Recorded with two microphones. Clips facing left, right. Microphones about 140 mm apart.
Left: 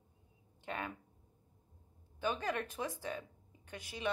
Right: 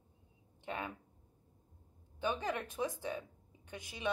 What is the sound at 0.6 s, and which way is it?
Speech, 15° right (ahead or behind).